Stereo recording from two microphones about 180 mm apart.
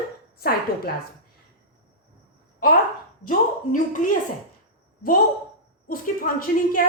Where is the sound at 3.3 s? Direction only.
45° left (ahead or behind).